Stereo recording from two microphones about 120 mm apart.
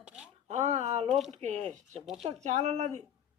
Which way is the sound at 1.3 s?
70° right (ahead or behind).